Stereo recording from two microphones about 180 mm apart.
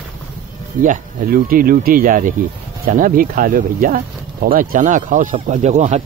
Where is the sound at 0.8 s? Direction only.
50° right (ahead or behind).